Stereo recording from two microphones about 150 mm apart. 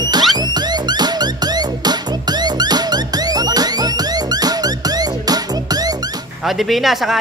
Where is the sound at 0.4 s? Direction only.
30° right (ahead or behind).